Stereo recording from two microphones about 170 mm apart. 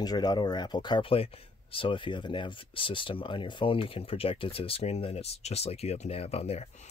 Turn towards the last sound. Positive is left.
turn(degrees=35)  # may be behind; listen again after turning